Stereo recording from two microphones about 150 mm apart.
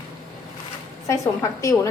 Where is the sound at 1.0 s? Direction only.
20° left (ahead or behind).